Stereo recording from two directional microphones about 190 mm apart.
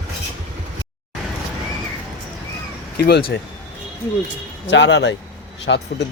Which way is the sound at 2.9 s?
55° left (ahead or behind).